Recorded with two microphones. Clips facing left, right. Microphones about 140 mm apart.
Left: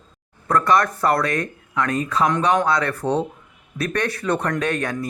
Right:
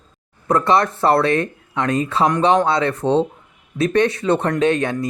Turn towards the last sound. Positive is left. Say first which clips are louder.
# right 5 dB
turn(degrees=-25)  # may be behind; listen again after turning